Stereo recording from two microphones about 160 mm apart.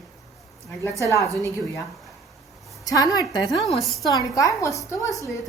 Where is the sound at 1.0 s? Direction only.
20° left (ahead or behind).